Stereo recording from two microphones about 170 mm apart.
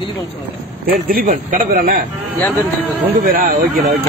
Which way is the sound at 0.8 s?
55° right (ahead or behind).